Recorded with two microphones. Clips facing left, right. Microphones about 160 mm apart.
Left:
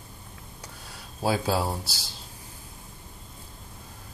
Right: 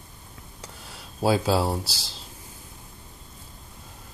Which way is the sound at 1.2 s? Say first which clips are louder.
Right 4 dB; 25° right (ahead or behind).